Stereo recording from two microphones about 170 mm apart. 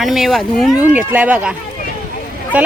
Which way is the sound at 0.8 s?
10° right (ahead or behind).